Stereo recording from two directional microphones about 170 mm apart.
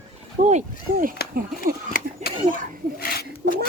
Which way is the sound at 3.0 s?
65° left (ahead or behind).